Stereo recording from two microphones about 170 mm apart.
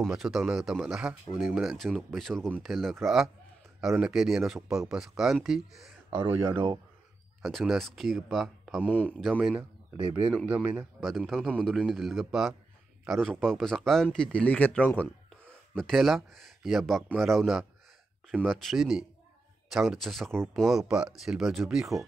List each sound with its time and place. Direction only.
0.0 s speech: centre (ahead or behind)
6.1 s speech: 15° right (ahead or behind)
7.4 s speech: centre (ahead or behind)
8.8 s speech: 10° left (ahead or behind)
9.3 s speech: 5° right (ahead or behind)
9.9 s a man's voice: 25° right (ahead or behind)
10.4 s speech: 10° right (ahead or behind)
11.0 s speech: centre (ahead or behind)